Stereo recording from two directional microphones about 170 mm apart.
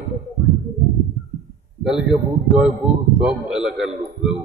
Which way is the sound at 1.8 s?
5° right (ahead or behind).